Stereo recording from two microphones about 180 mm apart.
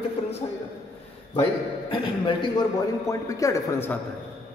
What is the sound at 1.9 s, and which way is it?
A man's voice, 25° left (ahead or behind).